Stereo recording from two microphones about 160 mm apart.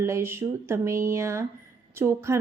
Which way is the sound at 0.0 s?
15° right (ahead or behind).